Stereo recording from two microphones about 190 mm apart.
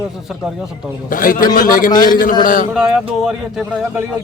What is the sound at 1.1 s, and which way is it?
A man's voice, 45° left (ahead or behind).